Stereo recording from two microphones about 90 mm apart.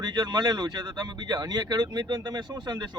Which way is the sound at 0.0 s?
50° right (ahead or behind).